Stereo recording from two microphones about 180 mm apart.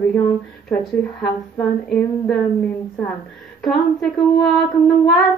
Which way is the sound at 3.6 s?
Centre (ahead or behind).